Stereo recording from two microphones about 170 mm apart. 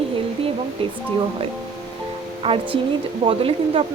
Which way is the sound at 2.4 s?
30° right (ahead or behind).